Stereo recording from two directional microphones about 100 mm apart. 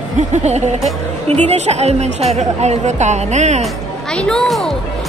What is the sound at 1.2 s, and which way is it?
Speech, 90° right.